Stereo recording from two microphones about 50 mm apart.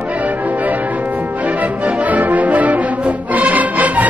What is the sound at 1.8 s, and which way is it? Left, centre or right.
Music, right.